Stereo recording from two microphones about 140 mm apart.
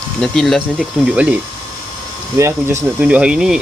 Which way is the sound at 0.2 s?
Centre (ahead or behind).